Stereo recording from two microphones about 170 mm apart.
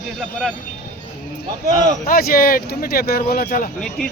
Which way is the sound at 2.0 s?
60° left (ahead or behind).